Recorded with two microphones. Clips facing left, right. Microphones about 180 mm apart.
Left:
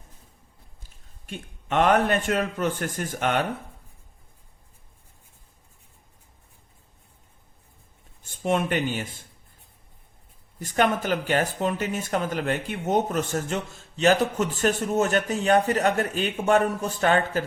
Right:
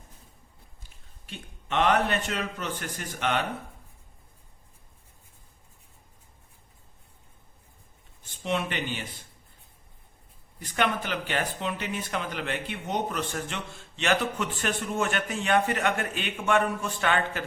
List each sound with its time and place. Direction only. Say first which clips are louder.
1.3 s a man's voice: left 4 dB; 50° left (ahead or behind)
8.2 s speech: left 5 dB; 45° left (ahead or behind)
10.6 s speech: left 5 dB; 45° left (ahead or behind)